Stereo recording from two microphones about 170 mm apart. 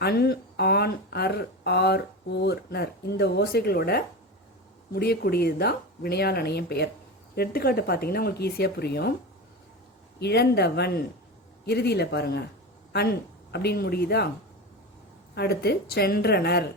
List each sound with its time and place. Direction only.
0.0 s speech: 70° left (ahead or behind)
10.2 s speech: 75° left (ahead or behind)
15.4 s speech: 70° left (ahead or behind)